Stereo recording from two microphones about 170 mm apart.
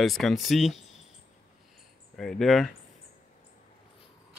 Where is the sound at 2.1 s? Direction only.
Centre (ahead or behind).